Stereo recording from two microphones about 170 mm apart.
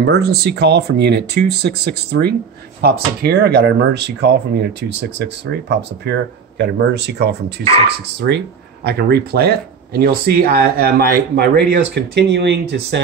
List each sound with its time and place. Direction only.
0.0 s speech: 75° right (ahead or behind)
8.8 s speech: 70° right (ahead or behind); by 13.0 s 90° right